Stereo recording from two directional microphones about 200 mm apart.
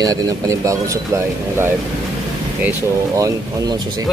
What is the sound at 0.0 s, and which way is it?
Speech, 20° right (ahead or behind).